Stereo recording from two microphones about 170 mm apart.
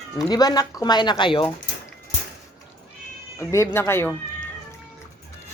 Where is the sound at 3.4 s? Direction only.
15° left (ahead or behind).